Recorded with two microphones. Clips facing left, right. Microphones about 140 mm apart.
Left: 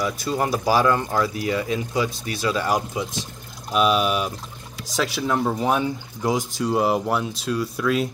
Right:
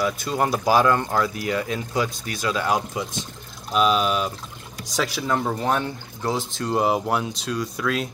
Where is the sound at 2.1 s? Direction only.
30° left (ahead or behind).